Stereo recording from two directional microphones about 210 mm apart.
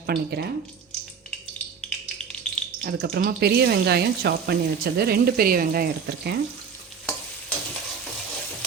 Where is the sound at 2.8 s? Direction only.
50° right (ahead or behind).